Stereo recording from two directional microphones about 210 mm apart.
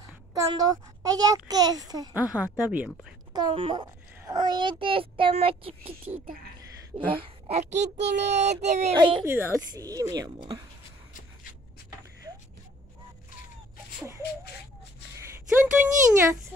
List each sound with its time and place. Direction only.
0.3 s a child's voice: 15° right (ahead or behind)
2.3 s a child's voice: 10° right (ahead or behind)
3.3 s a child's voice: 25° right (ahead or behind)
8.1 s child singing: 55° right (ahead or behind)
8.4 s a child's voice: 35° right (ahead or behind)
9.2 s a child's voice: 10° right (ahead or behind)
15.1 s a woman's voice: 10° right (ahead or behind)